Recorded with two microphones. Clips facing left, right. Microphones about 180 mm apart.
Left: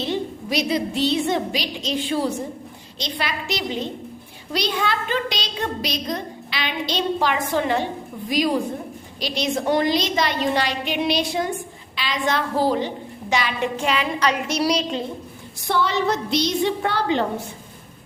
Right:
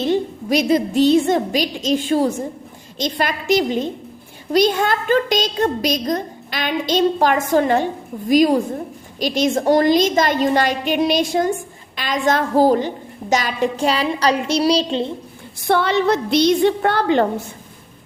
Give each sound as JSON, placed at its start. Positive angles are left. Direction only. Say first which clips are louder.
{"t": 0.0, "sound": "a woman's voice", "louder": "right 6 dB", "side_deg": -50}
{"t": 15.6, "sound": "a woman's voice", "louder": "right 5 dB", "side_deg": -60}